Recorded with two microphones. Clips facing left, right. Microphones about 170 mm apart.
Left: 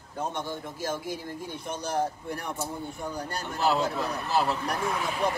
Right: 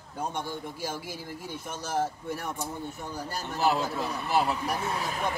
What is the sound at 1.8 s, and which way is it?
Speech, 5° right (ahead or behind).